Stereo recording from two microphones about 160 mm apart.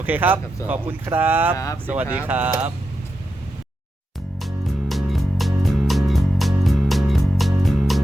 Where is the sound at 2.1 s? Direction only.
10° right (ahead or behind).